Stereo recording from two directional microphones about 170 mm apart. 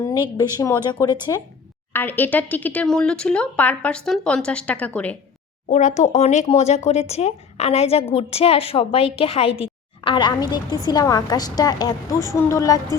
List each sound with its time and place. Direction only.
0.0 s a woman's voice: 20° left (ahead or behind)
1.9 s speech: 10° left (ahead or behind)
5.6 s a woman's voice: 45° left (ahead or behind); by 13.0 s 20° left (ahead or behind)